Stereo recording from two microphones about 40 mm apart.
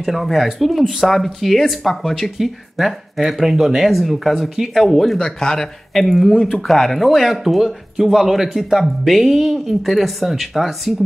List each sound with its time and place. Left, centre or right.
0.0 s speech: centre
2.3 s speech: centre
5.2 s speech: centre
6.0 s speech: centre